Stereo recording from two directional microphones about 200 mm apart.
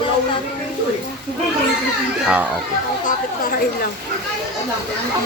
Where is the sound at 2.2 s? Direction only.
5° right (ahead or behind).